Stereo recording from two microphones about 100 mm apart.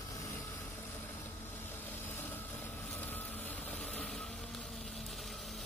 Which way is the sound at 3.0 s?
15° left (ahead or behind).